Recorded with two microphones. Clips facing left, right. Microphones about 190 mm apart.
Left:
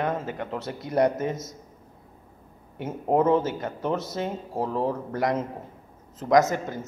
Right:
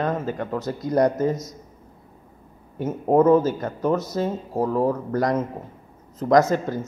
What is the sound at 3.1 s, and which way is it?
Speech, 25° left (ahead or behind).